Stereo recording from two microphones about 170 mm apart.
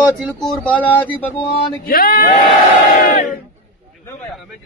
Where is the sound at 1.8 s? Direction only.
60° left (ahead or behind).